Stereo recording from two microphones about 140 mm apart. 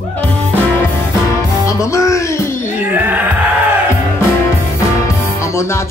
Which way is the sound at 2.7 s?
10° right (ahead or behind).